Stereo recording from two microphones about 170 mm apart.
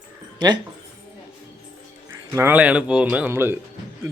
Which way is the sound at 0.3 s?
25° right (ahead or behind).